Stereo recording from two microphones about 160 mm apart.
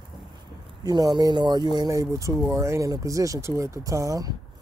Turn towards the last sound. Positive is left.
turn(degrees=-20)  # may be behind; listen again after turning